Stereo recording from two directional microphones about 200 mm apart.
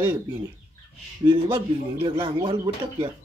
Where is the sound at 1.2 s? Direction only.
25° right (ahead or behind).